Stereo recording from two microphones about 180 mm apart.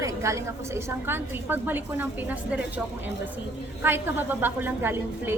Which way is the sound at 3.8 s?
10° right (ahead or behind).